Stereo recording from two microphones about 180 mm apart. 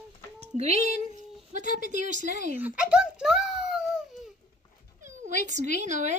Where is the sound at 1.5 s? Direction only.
45° right (ahead or behind).